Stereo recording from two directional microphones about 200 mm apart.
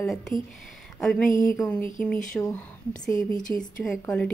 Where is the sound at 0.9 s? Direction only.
Centre (ahead or behind).